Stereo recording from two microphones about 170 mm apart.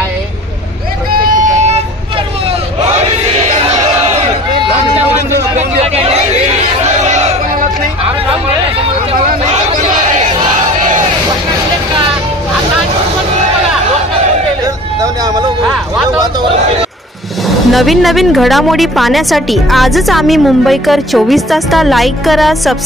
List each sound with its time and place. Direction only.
1.1 s vehicle: 55° right (ahead or behind)
5.6 s hubbub: 35° right (ahead or behind)
7.1 s crowd: 40° right (ahead or behind)
15.0 s vehicle: 20° right (ahead or behind)
17.5 s speech: centre (ahead or behind)